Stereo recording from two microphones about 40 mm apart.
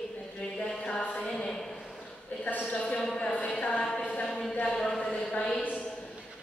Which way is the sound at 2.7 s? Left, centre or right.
Left.